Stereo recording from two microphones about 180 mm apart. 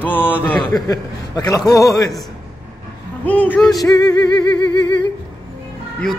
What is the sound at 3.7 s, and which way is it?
Speech, 20° left (ahead or behind).